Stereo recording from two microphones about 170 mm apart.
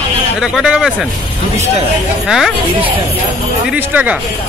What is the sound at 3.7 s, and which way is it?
Speech, 10° right (ahead or behind).